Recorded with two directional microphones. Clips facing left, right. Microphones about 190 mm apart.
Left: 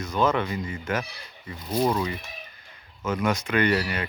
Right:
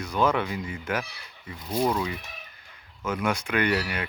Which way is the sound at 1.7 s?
5° left (ahead or behind).